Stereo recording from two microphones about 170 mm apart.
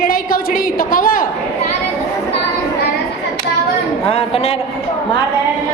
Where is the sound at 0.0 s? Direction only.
60° left (ahead or behind).